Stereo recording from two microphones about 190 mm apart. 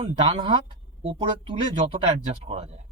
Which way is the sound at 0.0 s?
30° right (ahead or behind).